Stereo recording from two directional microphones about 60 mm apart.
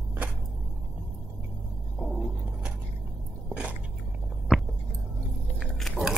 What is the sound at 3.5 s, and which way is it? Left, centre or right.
Biting, centre.